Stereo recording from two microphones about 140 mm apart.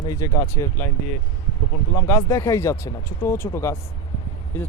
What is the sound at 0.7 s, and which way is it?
Speech, 15° left (ahead or behind).